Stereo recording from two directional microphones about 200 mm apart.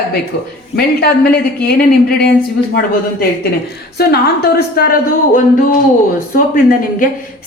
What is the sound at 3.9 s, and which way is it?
Speech, 50° left (ahead or behind).